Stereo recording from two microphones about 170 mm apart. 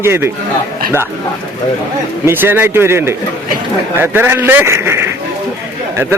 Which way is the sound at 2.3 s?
15° right (ahead or behind).